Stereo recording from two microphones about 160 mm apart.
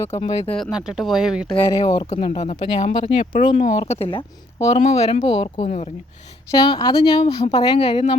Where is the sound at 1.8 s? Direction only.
35° left (ahead or behind).